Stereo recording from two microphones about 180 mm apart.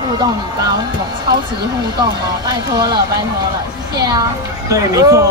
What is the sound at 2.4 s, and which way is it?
Speech, 20° right (ahead or behind).